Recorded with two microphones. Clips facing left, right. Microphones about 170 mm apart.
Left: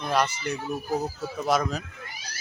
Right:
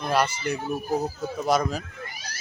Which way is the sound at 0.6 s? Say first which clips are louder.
Right 1 dB; 20° right (ahead or behind).